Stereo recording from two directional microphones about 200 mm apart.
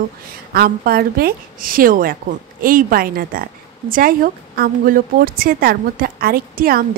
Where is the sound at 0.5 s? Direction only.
50° right (ahead or behind).